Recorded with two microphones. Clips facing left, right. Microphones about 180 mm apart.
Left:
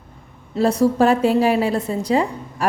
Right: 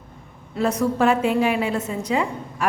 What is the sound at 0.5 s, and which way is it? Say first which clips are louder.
A woman's voice: left 5 dB; 30° left (ahead or behind).